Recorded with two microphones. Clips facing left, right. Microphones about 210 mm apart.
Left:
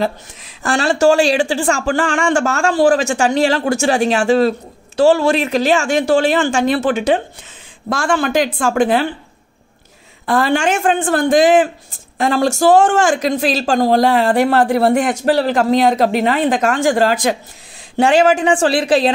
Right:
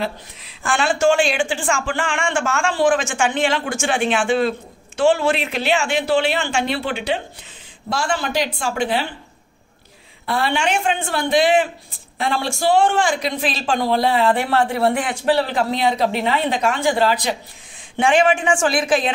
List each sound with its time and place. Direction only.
0.0 s speech: 45° left (ahead or behind)
10.2 s speech: 45° left (ahead or behind)